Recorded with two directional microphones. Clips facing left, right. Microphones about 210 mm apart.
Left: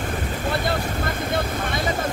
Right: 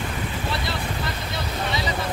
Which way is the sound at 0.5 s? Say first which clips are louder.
Left 4 dB; 50° left (ahead or behind).